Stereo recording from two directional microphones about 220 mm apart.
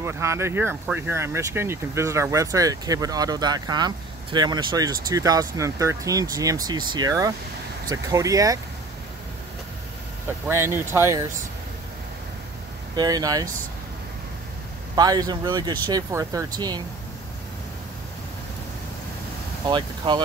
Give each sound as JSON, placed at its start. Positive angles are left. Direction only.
{"t": 0.0, "sound": "speech", "side_deg": -10}
{"t": 10.5, "sound": "speech", "side_deg": -10}
{"t": 12.9, "sound": "speech", "side_deg": -20}
{"t": 15.0, "sound": "speech", "side_deg": -15}
{"t": 19.7, "sound": "speech", "side_deg": -20}